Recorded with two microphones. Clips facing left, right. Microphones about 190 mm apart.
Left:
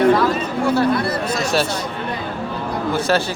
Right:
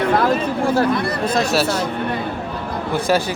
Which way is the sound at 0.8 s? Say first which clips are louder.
Even; 55° right (ahead or behind).